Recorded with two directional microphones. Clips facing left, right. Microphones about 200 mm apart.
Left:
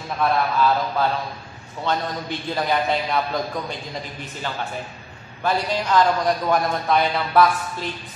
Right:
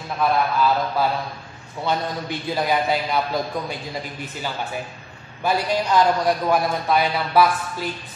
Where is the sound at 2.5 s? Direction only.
10° right (ahead or behind).